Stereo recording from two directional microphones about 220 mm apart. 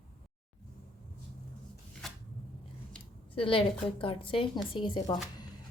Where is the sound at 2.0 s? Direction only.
Centre (ahead or behind).